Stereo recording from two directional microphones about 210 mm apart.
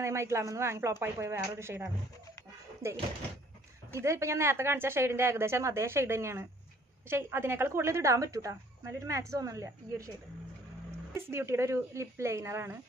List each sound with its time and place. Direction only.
0.0 s a woman's voice: 15° right (ahead or behind)
11.1 s a woman's voice: 10° right (ahead or behind)